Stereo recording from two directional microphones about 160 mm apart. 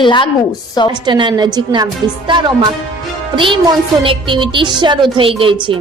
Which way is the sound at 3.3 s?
30° right (ahead or behind).